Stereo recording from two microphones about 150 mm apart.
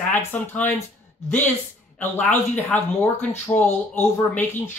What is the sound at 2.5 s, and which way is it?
Speech, 10° left (ahead or behind).